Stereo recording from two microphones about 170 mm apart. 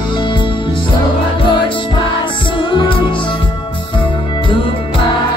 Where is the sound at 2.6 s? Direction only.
30° left (ahead or behind).